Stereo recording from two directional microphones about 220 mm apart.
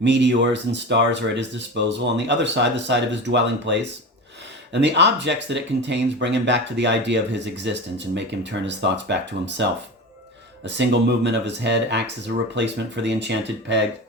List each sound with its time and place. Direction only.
0.0 s speech: 50° right (ahead or behind)